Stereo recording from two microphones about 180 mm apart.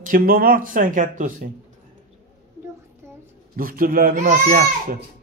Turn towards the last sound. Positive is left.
turn(degrees=-50)  # may be behind; listen again after turning